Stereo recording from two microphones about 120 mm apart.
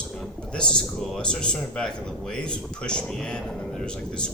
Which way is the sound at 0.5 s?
5° left (ahead or behind).